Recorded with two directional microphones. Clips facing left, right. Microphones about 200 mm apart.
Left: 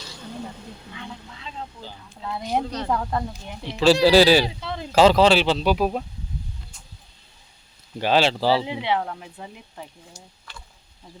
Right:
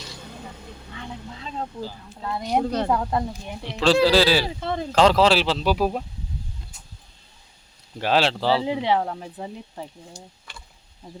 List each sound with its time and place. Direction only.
1.4 s speech: 40° right (ahead or behind)
1.8 s speech: centre (ahead or behind)
2.9 s speech: 10° right (ahead or behind)
3.7 s speech: centre (ahead or behind)
4.0 s speech: 15° left (ahead or behind)
4.6 s speech: 50° right (ahead or behind)
4.9 s speech: 5° left (ahead or behind)
7.9 s speech: centre (ahead or behind)
8.6 s speech: 35° right (ahead or behind)